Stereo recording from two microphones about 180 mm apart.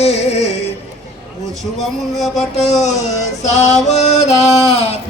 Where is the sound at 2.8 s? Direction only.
40° left (ahead or behind).